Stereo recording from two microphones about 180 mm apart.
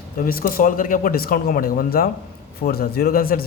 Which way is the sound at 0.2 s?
55° left (ahead or behind).